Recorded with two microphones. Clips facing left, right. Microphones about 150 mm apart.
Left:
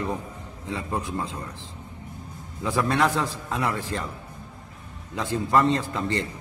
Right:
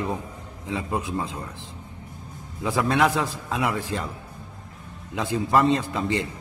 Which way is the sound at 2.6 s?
15° right (ahead or behind).